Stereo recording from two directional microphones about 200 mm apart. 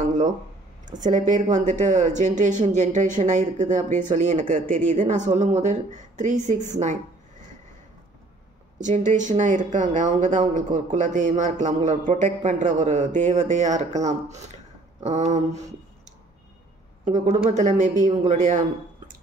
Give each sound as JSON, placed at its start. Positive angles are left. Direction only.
{"t": 1.0, "sound": "speech", "side_deg": -35}
{"t": 8.7, "sound": "speech", "side_deg": -35}
{"t": 17.1, "sound": "speech", "side_deg": -35}